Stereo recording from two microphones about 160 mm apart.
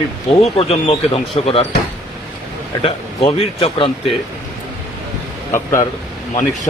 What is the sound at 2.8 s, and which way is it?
Speech, 40° left (ahead or behind).